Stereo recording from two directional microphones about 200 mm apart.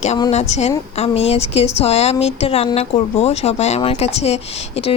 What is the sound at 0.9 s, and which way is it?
Speech, 30° left (ahead or behind).